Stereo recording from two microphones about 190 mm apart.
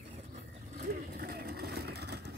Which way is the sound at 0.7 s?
50° right (ahead or behind).